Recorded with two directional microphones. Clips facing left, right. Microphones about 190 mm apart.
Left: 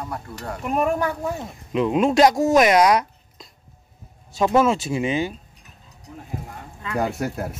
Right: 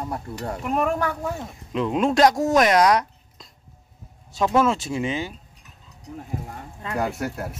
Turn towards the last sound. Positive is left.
turn(degrees=35)  # may be behind; listen again after turning